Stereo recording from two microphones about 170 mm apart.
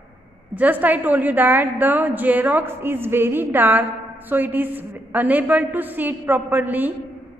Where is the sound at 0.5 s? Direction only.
10° right (ahead or behind).